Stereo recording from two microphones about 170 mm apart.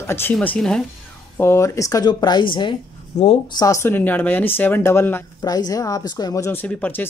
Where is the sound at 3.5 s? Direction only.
20° left (ahead or behind).